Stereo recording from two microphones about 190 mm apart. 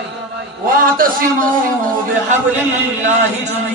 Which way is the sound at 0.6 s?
45° right (ahead or behind).